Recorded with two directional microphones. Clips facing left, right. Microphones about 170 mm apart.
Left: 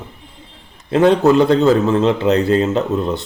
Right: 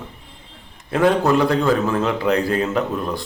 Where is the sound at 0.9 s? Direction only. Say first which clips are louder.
Left 5 dB; 25° left (ahead or behind).